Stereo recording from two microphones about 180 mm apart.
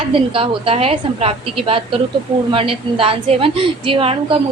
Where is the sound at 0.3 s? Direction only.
30° right (ahead or behind).